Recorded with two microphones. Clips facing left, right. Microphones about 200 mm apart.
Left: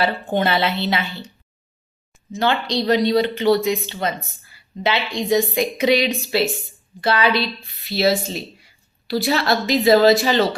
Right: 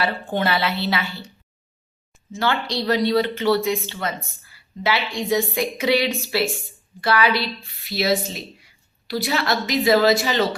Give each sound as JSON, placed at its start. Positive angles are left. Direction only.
{"t": 0.0, "sound": "speech", "side_deg": 20}
{"t": 2.3, "sound": "speech", "side_deg": 20}